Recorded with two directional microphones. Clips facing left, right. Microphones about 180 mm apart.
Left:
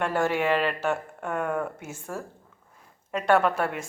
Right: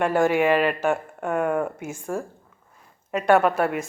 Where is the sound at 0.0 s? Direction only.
15° right (ahead or behind).